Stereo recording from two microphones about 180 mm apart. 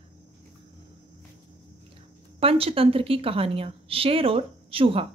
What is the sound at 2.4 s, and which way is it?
A woman's voice, 30° right (ahead or behind).